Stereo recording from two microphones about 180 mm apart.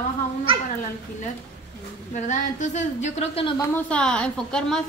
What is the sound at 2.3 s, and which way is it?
Speech, 45° left (ahead or behind).